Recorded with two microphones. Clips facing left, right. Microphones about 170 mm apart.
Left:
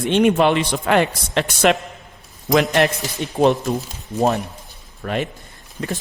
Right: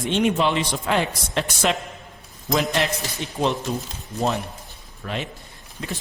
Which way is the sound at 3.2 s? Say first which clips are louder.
Left 5 dB; 50° left (ahead or behind).